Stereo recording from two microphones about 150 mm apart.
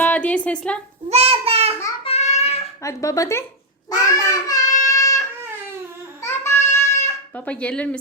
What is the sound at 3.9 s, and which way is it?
Child singing, 25° left (ahead or behind).